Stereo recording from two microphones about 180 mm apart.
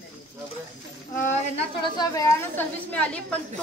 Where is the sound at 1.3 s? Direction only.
35° left (ahead or behind).